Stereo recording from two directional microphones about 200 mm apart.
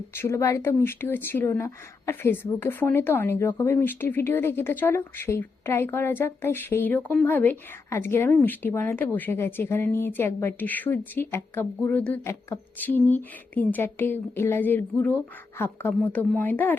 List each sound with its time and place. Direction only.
0.1 s speech: 15° left (ahead or behind)